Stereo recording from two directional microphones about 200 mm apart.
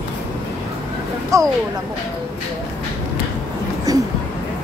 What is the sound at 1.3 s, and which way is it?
Speech, 15° right (ahead or behind).